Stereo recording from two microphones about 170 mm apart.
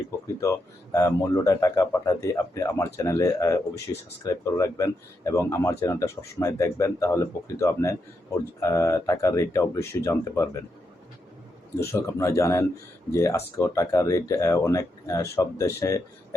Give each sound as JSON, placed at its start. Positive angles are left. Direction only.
{"t": 0.9, "sound": "speech", "side_deg": 20}
{"t": 11.9, "sound": "speech", "side_deg": 15}